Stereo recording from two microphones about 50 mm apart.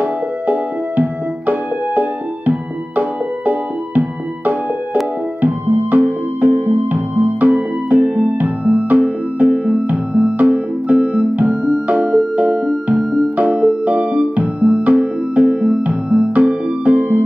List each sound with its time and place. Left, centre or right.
0.0 s music: right
5.4 s music: right